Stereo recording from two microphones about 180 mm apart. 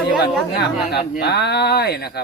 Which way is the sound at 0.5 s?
65° left (ahead or behind).